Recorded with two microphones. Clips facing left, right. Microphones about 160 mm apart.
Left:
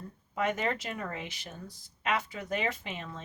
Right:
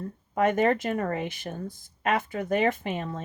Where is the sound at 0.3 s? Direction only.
50° right (ahead or behind).